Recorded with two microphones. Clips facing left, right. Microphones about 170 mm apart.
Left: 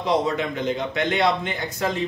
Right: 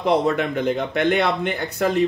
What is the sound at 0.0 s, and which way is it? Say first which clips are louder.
A man's voice: right 3 dB; 60° right (ahead or behind).